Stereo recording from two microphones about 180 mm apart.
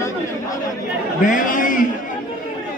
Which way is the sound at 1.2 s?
45° left (ahead or behind).